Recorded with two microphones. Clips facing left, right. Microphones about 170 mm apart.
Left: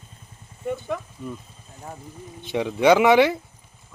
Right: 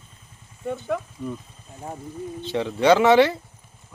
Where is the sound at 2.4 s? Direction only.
15° left (ahead or behind).